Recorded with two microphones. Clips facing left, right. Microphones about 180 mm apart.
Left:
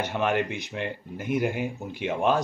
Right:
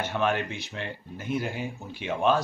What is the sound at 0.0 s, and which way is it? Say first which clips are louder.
A man's voice: left 1 dB; 15° left (ahead or behind).